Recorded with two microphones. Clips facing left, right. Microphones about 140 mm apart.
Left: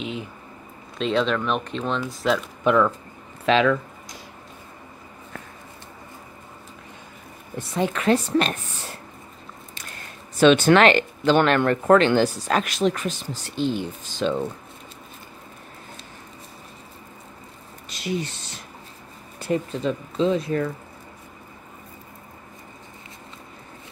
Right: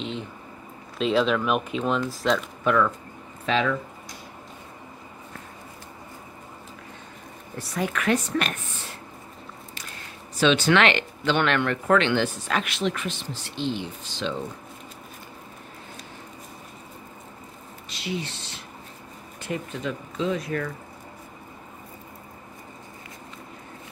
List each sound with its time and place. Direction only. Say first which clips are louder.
0.0 s a sound: left 1 dB; 5° left (ahead or behind)
0.9 s speech: even; 5° right (ahead or behind)
2.0 s speech: left 1 dB; 5° left (ahead or behind)
2.6 s speech: left 4 dB; 20° left (ahead or behind)
3.4 s speech: left 5 dB; 90° left
7.5 s speech: left 4 dB; 25° left (ahead or behind)
10.4 s speech: left 5 dB; 50° left (ahead or behind)
17.8 s a sound: left 4 dB; 45° left (ahead or behind)
19.4 s speech: left 6 dB; 35° left (ahead or behind)